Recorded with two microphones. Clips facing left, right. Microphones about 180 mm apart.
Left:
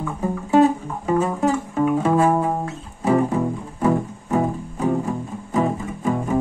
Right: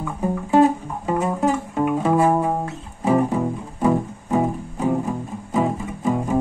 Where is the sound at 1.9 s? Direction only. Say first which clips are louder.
Even; 20° right (ahead or behind).